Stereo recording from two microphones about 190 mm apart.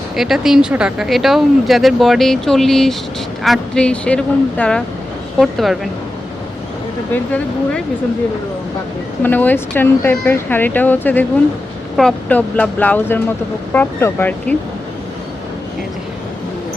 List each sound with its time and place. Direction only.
0.2 s speech: centre (ahead or behind)
7.1 s speech: 5° left (ahead or behind)
9.2 s speech: 10° left (ahead or behind)